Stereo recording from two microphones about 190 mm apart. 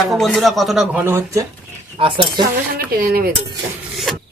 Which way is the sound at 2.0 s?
25° right (ahead or behind).